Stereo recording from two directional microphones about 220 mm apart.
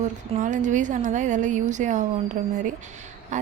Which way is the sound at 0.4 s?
35° right (ahead or behind).